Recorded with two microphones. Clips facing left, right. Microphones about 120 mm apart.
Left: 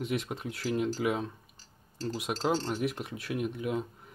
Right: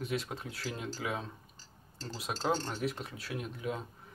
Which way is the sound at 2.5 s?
15° left (ahead or behind).